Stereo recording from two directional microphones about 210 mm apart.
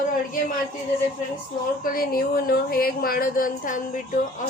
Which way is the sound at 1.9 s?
45° left (ahead or behind).